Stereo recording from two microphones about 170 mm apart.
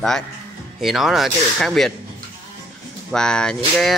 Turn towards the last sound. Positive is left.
turn(degrees=5)  # may be behind; listen again after turning